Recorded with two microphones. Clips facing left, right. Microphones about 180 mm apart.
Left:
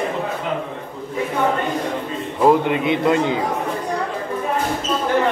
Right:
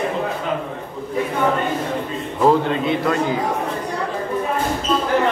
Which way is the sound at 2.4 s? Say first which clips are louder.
Left 1 dB; 15° left (ahead or behind).